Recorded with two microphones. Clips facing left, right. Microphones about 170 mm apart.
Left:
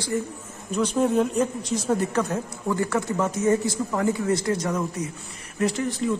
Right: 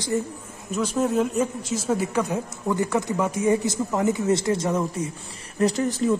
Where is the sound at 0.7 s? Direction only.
5° right (ahead or behind); by 5.1 s 25° right (ahead or behind).